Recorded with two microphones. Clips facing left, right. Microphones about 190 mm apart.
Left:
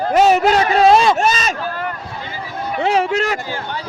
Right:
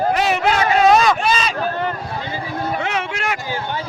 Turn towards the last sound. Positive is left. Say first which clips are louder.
# left 7 dB
turn(degrees=35)  # may be behind; listen again after turning